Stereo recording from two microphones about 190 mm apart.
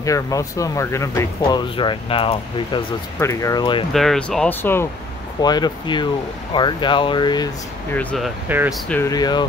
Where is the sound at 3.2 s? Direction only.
15° left (ahead or behind).